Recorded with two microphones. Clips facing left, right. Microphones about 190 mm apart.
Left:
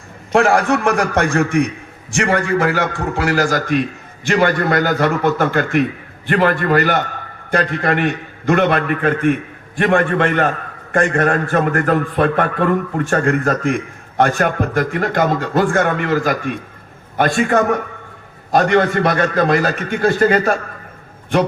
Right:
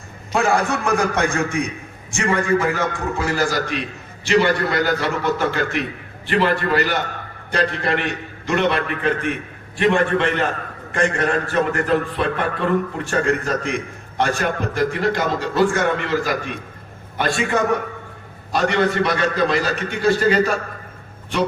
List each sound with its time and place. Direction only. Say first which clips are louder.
0.3 s a man's voice: left 5 dB; 80° left
1.2 s a man's voice: left 5 dB; 70° left (ahead or behind); by 3.4 s 85° left
3.5 s a man's voice: left 6 dB; 50° left (ahead or behind)